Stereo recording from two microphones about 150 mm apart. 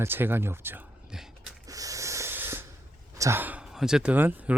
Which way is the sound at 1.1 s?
5° right (ahead or behind).